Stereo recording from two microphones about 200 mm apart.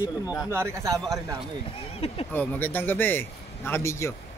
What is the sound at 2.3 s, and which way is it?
A man's voice, 10° left (ahead or behind).